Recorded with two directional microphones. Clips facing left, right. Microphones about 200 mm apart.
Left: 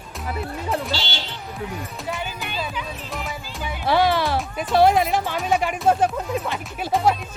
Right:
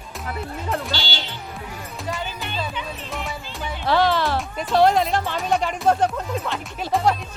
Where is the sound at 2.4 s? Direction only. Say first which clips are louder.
Even; centre (ahead or behind).